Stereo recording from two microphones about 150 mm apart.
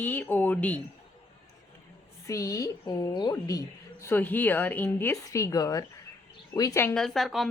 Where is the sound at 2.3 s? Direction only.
20° left (ahead or behind).